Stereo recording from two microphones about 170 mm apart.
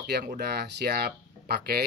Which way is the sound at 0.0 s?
55° right (ahead or behind).